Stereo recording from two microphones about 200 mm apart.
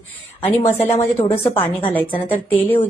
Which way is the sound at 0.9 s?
25° left (ahead or behind).